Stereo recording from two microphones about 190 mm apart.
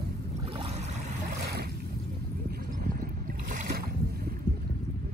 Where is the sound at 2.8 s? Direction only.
45° right (ahead or behind).